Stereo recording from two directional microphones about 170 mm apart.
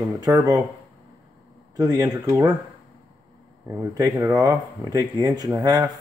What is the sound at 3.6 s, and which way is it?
Speech, 15° right (ahead or behind).